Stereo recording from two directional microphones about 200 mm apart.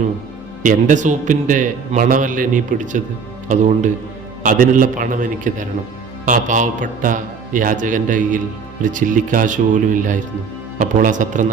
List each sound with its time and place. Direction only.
0.6 s a man's voice: 40° right (ahead or behind)